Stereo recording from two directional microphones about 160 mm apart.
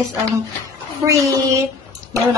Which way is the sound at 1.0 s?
20° right (ahead or behind).